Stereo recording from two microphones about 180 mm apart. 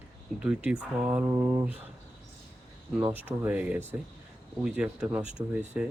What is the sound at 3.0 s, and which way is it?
Speech, 10° right (ahead or behind).